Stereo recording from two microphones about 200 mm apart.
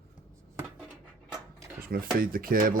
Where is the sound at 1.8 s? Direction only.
45° right (ahead or behind).